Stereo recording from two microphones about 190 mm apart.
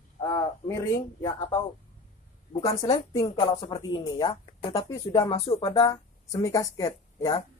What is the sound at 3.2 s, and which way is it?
Speech, 30° left (ahead or behind).